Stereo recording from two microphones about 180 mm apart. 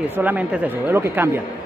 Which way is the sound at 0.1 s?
10° right (ahead or behind).